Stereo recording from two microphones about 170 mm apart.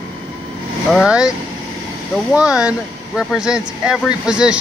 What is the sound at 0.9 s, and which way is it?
Speech, centre (ahead or behind).